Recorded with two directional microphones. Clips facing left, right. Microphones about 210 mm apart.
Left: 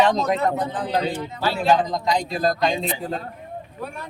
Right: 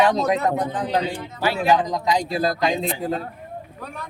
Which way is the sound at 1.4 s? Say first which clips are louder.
Even; 15° right (ahead or behind).